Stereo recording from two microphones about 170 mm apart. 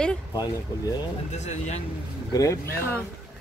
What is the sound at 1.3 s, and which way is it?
Speech, 40° left (ahead or behind).